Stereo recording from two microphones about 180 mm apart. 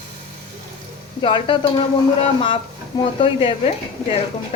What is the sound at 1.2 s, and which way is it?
Speech, 30° left (ahead or behind).